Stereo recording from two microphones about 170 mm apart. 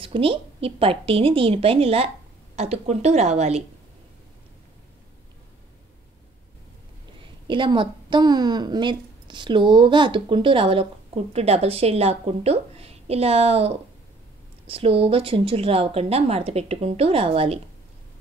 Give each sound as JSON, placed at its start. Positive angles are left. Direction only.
{"t": 0.0, "sound": "a woman's voice", "side_deg": -30}
{"t": 7.4, "sound": "a woman's voice", "side_deg": -30}